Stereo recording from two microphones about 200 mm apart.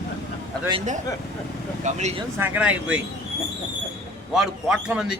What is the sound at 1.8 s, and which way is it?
Speech, 35° right (ahead or behind).